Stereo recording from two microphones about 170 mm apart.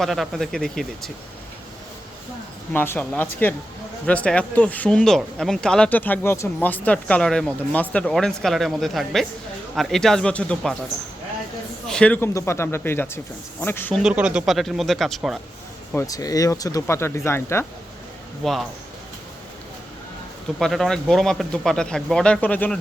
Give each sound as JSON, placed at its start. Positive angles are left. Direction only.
{"t": 0.0, "sound": "speech", "side_deg": 0}
{"t": 2.7, "sound": "speech", "side_deg": 10}
{"t": 11.9, "sound": "speech", "side_deg": 5}
{"t": 14.0, "sound": "speech", "side_deg": -5}
{"t": 16.0, "sound": "speech", "side_deg": 20}
{"t": 18.4, "sound": "speech", "side_deg": 5}
{"t": 20.6, "sound": "speech", "side_deg": 0}